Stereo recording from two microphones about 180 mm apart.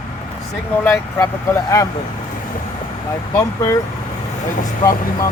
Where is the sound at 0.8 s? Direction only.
15° left (ahead or behind).